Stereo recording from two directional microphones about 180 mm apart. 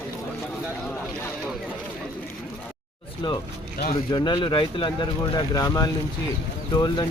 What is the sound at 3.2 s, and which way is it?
Speech, 25° left (ahead or behind).